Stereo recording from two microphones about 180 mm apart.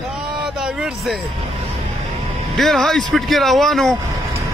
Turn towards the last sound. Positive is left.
turn(degrees=0)  # may be behind; listen again after turning